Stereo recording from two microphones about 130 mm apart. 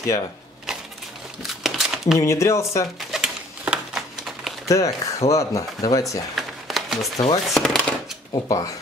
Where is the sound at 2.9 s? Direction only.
5° right (ahead or behind).